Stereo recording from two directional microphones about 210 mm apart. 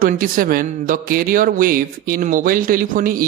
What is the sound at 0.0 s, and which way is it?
A man's voice, 40° right (ahead or behind).